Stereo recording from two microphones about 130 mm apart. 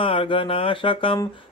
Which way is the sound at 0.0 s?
40° left (ahead or behind).